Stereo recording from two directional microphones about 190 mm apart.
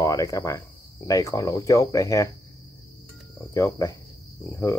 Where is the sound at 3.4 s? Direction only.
15° left (ahead or behind).